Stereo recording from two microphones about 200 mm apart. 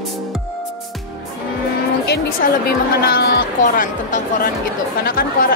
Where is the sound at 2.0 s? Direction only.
55° left (ahead or behind).